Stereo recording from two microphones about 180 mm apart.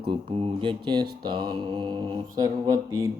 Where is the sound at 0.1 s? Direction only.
30° right (ahead or behind).